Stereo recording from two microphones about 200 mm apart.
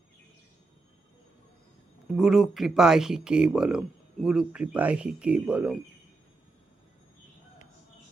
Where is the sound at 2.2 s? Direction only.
Centre (ahead or behind).